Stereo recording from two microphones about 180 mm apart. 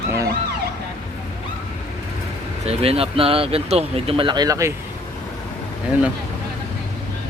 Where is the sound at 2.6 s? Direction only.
35° right (ahead or behind); by 4.7 s 20° right (ahead or behind).